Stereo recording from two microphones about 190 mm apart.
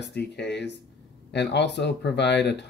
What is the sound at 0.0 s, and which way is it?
Speech, 60° left (ahead or behind).